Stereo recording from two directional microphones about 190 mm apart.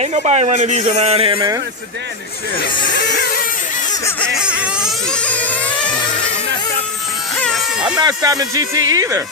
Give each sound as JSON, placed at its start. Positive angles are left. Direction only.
{"t": 0.0, "sound": "a man's voice", "side_deg": -35}
{"t": 4.4, "sound": "vehicle", "side_deg": -5}
{"t": 7.3, "sound": "music", "side_deg": 0}
{"t": 7.9, "sound": "speech", "side_deg": -20}